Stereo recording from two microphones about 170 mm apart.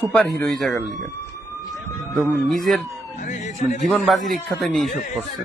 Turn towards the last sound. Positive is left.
turn(degrees=0)  # may be behind; listen again after turning